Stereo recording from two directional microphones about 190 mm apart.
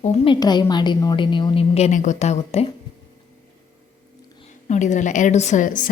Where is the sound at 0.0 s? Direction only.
35° left (ahead or behind).